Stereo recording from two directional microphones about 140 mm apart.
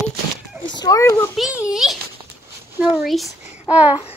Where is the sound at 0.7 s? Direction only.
25° left (ahead or behind).